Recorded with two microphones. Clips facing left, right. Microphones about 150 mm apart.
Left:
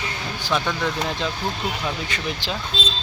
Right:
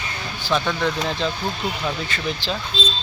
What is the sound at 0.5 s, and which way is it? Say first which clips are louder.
Speech: right 2 dB; 5° left (ahead or behind).